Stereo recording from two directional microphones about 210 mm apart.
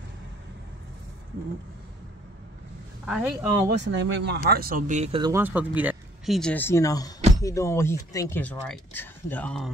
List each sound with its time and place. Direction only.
3.1 s speech: centre (ahead or behind)
3.6 s speech: 55° right (ahead or behind); by 5.2 s 35° right (ahead or behind)
5.2 s speech: 10° right (ahead or behind); by 9.7 s 5° left (ahead or behind)